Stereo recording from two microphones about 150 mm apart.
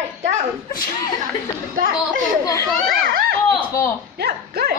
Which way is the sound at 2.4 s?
20° left (ahead or behind).